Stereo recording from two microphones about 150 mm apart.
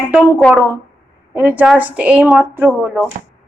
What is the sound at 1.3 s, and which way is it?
Speech, 10° right (ahead or behind).